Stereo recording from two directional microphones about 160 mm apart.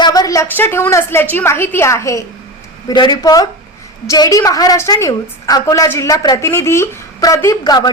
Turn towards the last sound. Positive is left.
turn(degrees=25)  # may be behind; listen again after turning